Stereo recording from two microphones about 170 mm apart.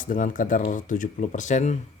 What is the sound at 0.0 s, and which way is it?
Speech, 50° left (ahead or behind).